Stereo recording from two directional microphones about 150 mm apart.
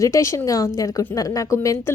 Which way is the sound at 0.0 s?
20° left (ahead or behind).